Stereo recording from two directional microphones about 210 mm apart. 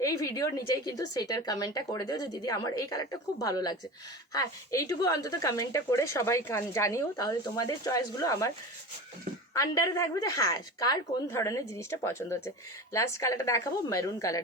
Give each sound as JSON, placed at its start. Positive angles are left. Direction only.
{"t": 0.0, "sound": "speech", "side_deg": 15}
{"t": 9.6, "sound": "speech", "side_deg": 15}